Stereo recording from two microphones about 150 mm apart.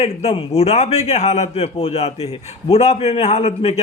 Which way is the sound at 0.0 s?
45° left (ahead or behind).